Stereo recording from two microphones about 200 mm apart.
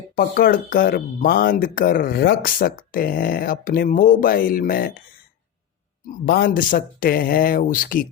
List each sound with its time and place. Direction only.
0.2 s speech: 45° left (ahead or behind)
6.2 s speech: 45° left (ahead or behind)